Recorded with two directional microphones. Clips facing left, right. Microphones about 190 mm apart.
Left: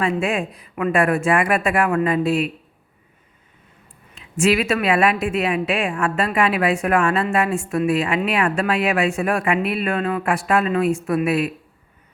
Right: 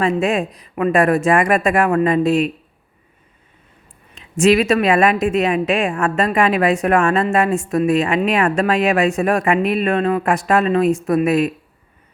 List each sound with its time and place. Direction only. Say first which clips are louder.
0.0 s speech: right 4 dB; 40° right (ahead or behind)
4.4 s speech: right 5 dB; 40° right (ahead or behind)